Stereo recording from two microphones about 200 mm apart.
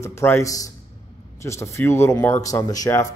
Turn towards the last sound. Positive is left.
turn(degrees=15)  # may be behind; listen again after turning